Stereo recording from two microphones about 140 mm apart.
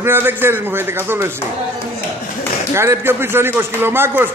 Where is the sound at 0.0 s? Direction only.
15° right (ahead or behind).